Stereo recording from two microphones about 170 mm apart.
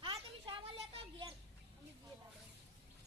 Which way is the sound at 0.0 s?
30° right (ahead or behind).